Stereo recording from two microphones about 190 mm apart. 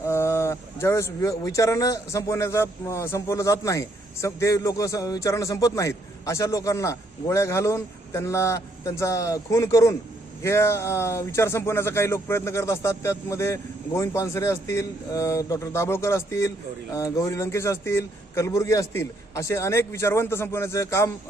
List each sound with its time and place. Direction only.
0.0 s speech: 15° left (ahead or behind)